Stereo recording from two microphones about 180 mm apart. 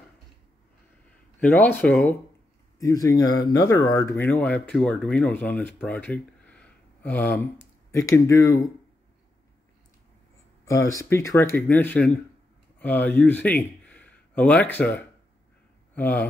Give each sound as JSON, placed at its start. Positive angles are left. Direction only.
{"t": 1.4, "sound": "speech", "side_deg": 10}
{"t": 10.6, "sound": "speech", "side_deg": 15}